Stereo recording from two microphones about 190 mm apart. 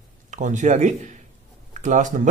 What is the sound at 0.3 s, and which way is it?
Speech, 40° right (ahead or behind).